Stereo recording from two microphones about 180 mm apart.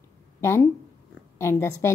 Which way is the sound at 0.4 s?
15° left (ahead or behind).